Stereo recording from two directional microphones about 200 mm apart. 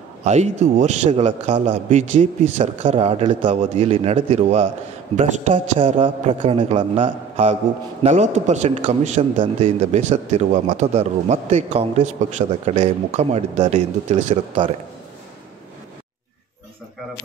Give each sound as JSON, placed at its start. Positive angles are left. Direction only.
{"t": 0.2, "sound": "a man's voice", "side_deg": -35}